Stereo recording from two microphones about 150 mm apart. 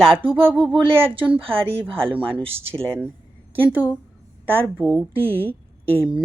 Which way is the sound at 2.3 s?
40° right (ahead or behind).